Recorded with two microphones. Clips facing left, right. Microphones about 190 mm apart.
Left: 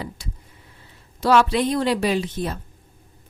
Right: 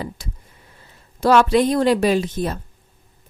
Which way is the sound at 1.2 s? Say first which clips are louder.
Right 3 dB; 45° right (ahead or behind).